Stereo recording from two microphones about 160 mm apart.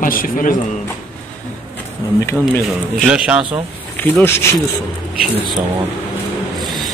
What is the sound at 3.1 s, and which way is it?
Speech, 5° right (ahead or behind).